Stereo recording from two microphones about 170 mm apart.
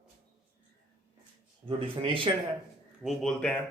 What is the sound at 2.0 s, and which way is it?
Speech, 30° right (ahead or behind).